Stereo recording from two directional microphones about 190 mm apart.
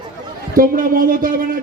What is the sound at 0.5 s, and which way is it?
A man's voice, 45° right (ahead or behind).